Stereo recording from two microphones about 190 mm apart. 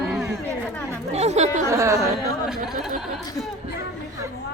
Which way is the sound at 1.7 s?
15° right (ahead or behind).